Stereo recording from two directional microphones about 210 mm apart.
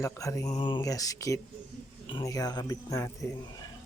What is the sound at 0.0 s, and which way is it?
Speech, 15° left (ahead or behind).